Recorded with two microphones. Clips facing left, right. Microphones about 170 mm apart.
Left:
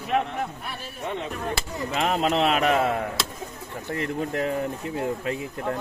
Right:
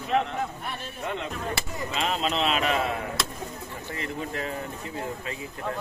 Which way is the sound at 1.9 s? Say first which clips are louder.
Left 5 dB; 60° left (ahead or behind).